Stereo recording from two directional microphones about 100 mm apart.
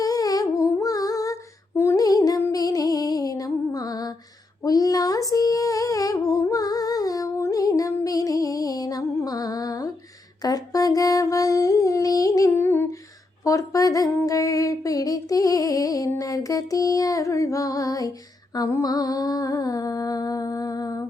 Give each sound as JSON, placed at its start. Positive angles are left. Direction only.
{"t": 0.0, "sound": "humming", "side_deg": 35}
{"t": 2.0, "sound": "music", "side_deg": 40}
{"t": 4.6, "sound": "humming", "side_deg": 40}
{"t": 10.4, "sound": "a sound", "side_deg": 40}
{"t": 12.5, "sound": "humming", "side_deg": 20}
{"t": 13.4, "sound": "a sound", "side_deg": 35}
{"t": 14.3, "sound": "music", "side_deg": 35}